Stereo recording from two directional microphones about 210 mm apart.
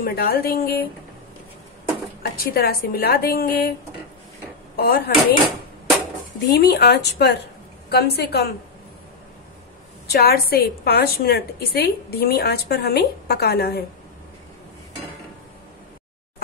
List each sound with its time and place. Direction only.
0.0 s a woman's voice: 45° left (ahead or behind)
2.5 s a woman's voice: 45° left (ahead or behind)
4.7 s a woman's voice: 50° left (ahead or behind)
6.5 s a woman's voice: 50° left (ahead or behind)
10.0 s a woman's voice: 50° left (ahead or behind)